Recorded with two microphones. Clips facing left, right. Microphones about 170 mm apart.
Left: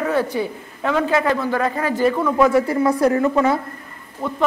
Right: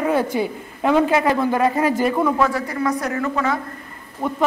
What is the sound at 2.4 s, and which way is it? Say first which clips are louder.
Speech: left 5 dB; 25° left (ahead or behind).